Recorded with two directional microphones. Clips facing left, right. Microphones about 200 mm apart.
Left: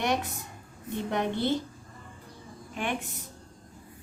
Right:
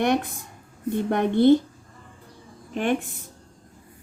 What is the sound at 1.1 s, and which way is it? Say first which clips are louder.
Speech: right 11 dB; 50° right (ahead or behind).